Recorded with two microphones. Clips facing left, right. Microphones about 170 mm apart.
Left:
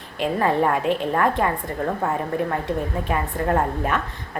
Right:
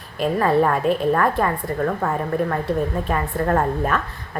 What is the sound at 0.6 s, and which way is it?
Speech, 20° left (ahead or behind).